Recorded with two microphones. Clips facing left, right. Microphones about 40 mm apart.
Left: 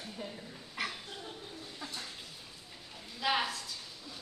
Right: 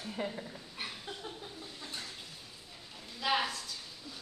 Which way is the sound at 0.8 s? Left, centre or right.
Left.